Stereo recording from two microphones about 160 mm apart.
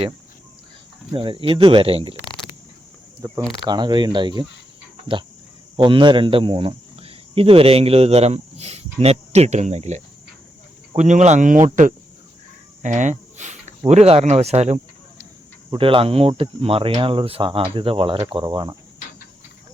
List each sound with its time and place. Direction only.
1.1 s speech: 35° right (ahead or behind)
3.2 s speech: 20° right (ahead or behind)
5.7 s speech: 30° right (ahead or behind); by 11.6 s 50° right (ahead or behind)
12.8 s speech: 50° right (ahead or behind); by 18.8 s 30° right (ahead or behind)